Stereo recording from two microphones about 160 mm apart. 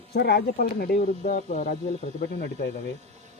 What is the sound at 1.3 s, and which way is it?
Speech, 55° left (ahead or behind).